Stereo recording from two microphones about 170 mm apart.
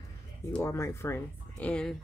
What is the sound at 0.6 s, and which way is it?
Speech, 15° left (ahead or behind).